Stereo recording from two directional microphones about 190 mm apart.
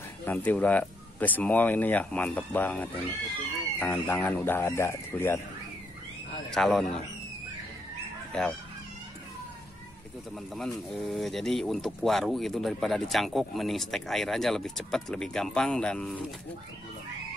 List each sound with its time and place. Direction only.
0.2 s speech: 10° left (ahead or behind)
6.5 s speech: centre (ahead or behind)
8.3 s speech: 5° left (ahead or behind)
10.5 s speech: centre (ahead or behind)